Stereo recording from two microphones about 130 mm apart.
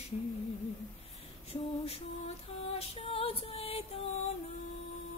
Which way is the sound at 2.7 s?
45° left (ahead or behind).